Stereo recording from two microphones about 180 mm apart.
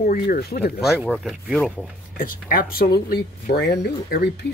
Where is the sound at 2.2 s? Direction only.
50° left (ahead or behind).